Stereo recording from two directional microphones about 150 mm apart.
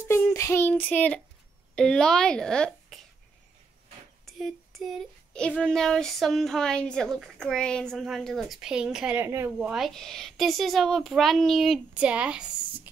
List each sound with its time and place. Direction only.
0.1 s child singing: 20° left (ahead or behind)
4.4 s child singing: centre (ahead or behind); by 9.7 s 15° right (ahead or behind)
9.7 s child singing: centre (ahead or behind)